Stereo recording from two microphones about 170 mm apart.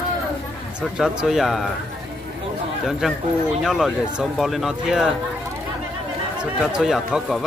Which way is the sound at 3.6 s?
Centre (ahead or behind).